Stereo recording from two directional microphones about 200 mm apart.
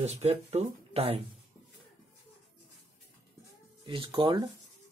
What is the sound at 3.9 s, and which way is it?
Speech, 25° right (ahead or behind).